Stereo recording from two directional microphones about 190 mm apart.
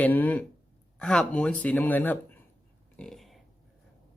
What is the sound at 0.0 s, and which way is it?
Speech, 10° left (ahead or behind).